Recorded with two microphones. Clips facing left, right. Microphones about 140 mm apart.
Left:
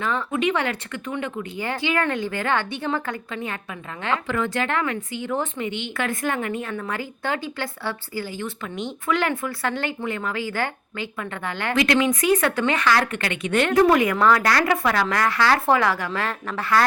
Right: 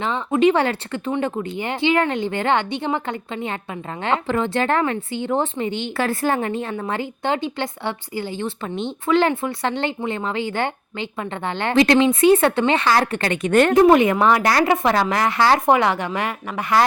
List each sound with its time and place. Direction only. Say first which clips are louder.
0.3 s speech: right 10 dB; 30° right (ahead or behind)
13.7 s speech: right 2 dB; 25° right (ahead or behind)